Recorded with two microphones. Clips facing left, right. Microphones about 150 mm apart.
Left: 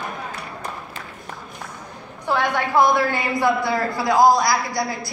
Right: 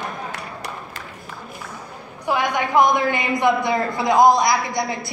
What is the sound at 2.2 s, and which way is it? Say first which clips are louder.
A woman's voice: even; 15° right (ahead or behind).